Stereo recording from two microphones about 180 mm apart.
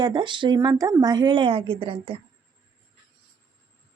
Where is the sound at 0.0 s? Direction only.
25° right (ahead or behind).